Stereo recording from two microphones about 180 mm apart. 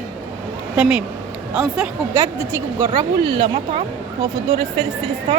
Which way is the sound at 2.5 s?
15° right (ahead or behind).